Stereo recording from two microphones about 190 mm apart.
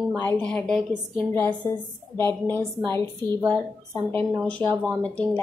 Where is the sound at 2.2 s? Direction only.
15° left (ahead or behind).